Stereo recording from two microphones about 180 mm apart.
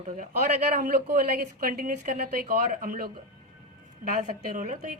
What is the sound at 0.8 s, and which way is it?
A woman's voice, 50° right (ahead or behind).